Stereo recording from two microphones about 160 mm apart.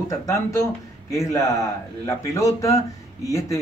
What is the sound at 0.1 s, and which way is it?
A man's voice, 20° left (ahead or behind).